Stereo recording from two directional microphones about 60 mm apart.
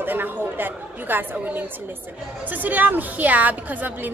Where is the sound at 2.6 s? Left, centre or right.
Right.